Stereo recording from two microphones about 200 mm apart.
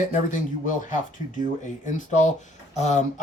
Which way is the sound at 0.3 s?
40° left (ahead or behind).